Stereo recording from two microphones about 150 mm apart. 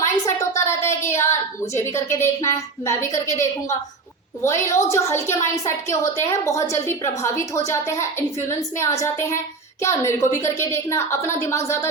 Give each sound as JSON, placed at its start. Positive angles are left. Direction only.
{"t": 0.0, "sound": "a woman's voice", "side_deg": 20}